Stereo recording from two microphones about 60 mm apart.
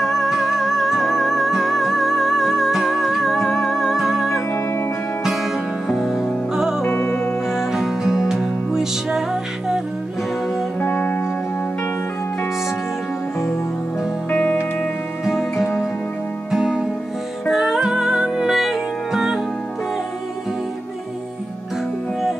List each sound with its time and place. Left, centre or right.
0.0 s music: centre
6.8 s music: left
7.4 s music: centre
10.8 s music: left
14.3 s music: left
16.4 s music: centre